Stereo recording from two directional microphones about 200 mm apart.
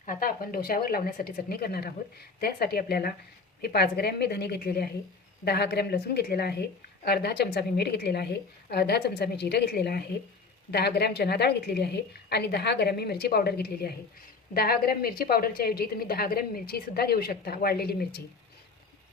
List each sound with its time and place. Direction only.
0.0 s speech: 45° left (ahead or behind)